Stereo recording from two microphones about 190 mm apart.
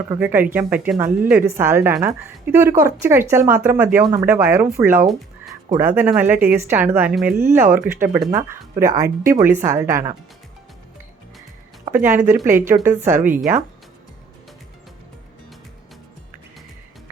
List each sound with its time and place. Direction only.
0.1 s speech: 10° right (ahead or behind)
11.9 s speech: 10° right (ahead or behind)